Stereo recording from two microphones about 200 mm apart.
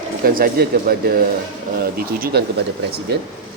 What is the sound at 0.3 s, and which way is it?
A man's voice, 45° right (ahead or behind).